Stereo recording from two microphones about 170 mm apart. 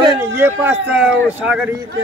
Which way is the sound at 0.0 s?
20° right (ahead or behind).